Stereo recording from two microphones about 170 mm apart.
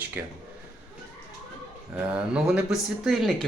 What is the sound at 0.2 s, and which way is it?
Speech, 10° right (ahead or behind).